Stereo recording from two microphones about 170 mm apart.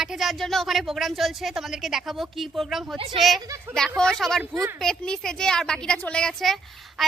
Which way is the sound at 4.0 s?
5° left (ahead or behind).